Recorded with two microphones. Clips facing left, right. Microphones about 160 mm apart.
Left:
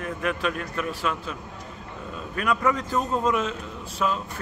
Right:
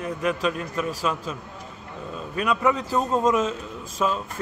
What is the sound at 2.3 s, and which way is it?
Speech, 15° right (ahead or behind).